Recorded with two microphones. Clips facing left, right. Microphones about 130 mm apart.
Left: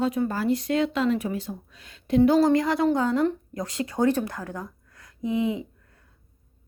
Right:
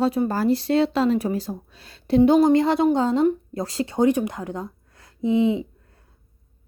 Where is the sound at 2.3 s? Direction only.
25° right (ahead or behind).